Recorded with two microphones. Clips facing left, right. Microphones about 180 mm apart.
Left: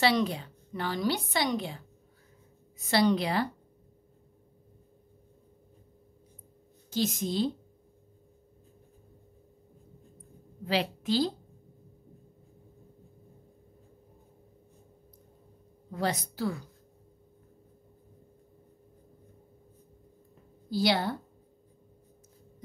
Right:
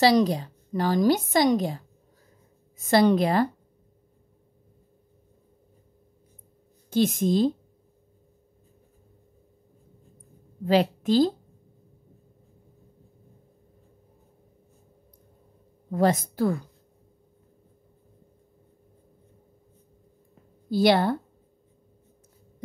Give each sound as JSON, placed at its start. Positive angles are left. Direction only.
{"t": 0.0, "sound": "a woman's voice", "side_deg": -40}
{"t": 2.8, "sound": "a woman's voice", "side_deg": -50}
{"t": 6.9, "sound": "a woman's voice", "side_deg": -55}
{"t": 10.6, "sound": "a woman's voice", "side_deg": -45}
{"t": 15.9, "sound": "a woman's voice", "side_deg": -50}
{"t": 20.7, "sound": "a woman's voice", "side_deg": -55}